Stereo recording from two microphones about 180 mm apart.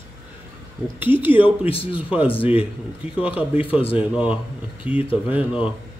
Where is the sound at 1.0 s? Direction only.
10° right (ahead or behind).